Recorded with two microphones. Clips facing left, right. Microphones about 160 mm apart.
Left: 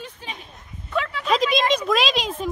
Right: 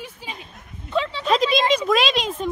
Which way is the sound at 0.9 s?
25° right (ahead or behind).